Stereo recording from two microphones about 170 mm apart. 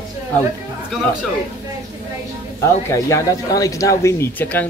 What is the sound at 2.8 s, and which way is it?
Speech, 20° left (ahead or behind).